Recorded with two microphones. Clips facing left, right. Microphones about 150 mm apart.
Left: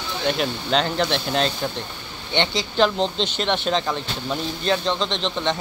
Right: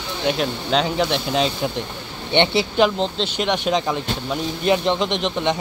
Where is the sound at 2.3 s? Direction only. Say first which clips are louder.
Right 6 dB; 20° right (ahead or behind).